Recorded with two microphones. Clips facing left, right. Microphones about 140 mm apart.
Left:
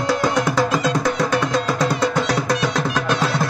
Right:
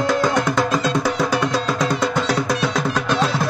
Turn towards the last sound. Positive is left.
turn(degrees=0)  # may be behind; listen again after turning